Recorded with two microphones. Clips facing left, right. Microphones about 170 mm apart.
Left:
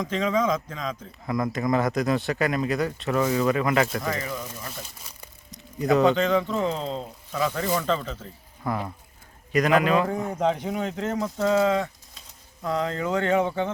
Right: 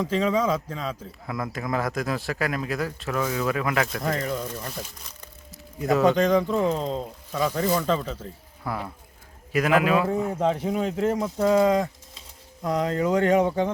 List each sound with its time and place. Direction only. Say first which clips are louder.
0.0 s speech: right 1 dB; 30° right (ahead or behind)
1.3 s a man's voice: left 5 dB; centre (ahead or behind)
4.2 s speech: right 4 dB; 55° right (ahead or behind)
5.5 s squish: left 1 dB; centre (ahead or behind)
6.1 s speech: right 2 dB; 40° right (ahead or behind)
6.5 s speech: right 3 dB; 10° right (ahead or behind)
7.3 s speech: right 2 dB; 30° right (ahead or behind)
7.8 s a man's voice: right 1 dB; 5° right (ahead or behind)
10.7 s speech: right 4 dB; 30° right (ahead or behind)